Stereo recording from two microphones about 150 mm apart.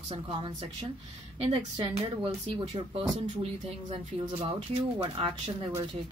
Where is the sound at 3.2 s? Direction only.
45° right (ahead or behind).